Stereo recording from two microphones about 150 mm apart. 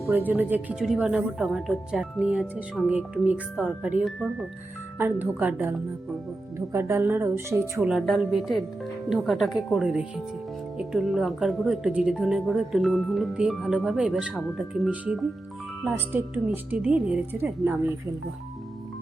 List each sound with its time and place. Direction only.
0.1 s a woman's voice: 10° right (ahead or behind)
6.7 s a woman's voice: 20° right (ahead or behind)
7.9 s a woman's voice: centre (ahead or behind)